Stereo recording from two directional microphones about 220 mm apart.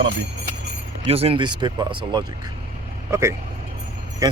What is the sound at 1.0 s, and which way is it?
Speech, 25° right (ahead or behind).